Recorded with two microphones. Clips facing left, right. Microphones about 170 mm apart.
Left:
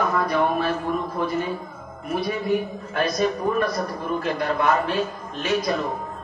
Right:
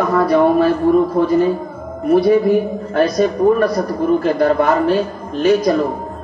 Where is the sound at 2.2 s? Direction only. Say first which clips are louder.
Right 11 dB; 40° right (ahead or behind).